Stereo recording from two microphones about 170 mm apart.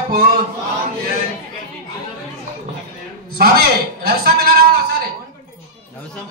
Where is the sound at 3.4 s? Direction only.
65° right (ahead or behind).